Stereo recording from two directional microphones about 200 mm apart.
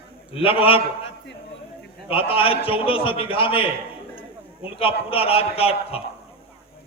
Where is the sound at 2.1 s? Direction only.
25° left (ahead or behind).